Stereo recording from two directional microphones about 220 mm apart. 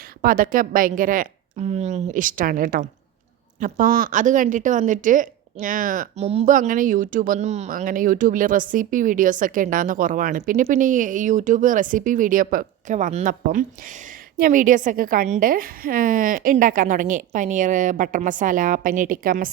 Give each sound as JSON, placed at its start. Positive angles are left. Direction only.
{"t": 0.2, "sound": "a woman's voice", "side_deg": -40}